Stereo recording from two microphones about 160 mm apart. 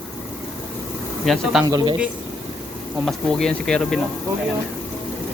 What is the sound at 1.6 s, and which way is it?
Speech, 25° right (ahead or behind).